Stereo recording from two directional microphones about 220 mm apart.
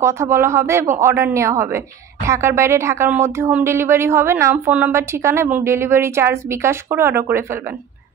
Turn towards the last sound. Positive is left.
turn(degrees=-10)  # may be behind; listen again after turning